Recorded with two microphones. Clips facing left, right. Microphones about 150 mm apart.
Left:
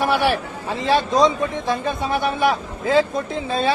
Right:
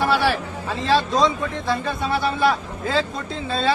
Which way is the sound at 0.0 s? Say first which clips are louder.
Left 1 dB; 15° left (ahead or behind).